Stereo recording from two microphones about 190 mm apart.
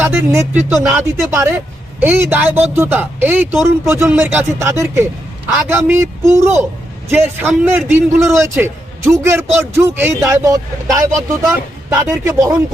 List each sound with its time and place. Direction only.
0.0 s a man's voice: 10° right (ahead or behind)